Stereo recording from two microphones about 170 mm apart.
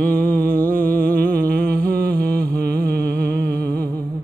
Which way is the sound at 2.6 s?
65° right (ahead or behind).